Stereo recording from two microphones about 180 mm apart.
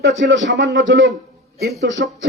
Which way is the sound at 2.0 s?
65° right (ahead or behind).